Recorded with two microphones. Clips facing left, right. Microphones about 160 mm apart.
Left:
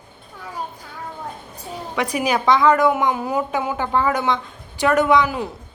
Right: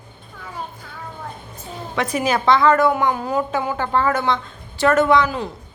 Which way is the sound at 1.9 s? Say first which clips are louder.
Right 1 dB; 10° left (ahead or behind).